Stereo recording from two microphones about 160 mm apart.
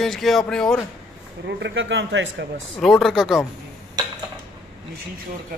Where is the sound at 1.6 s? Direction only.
90° right.